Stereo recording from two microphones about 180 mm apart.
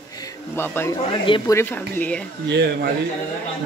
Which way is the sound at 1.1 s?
25° left (ahead or behind).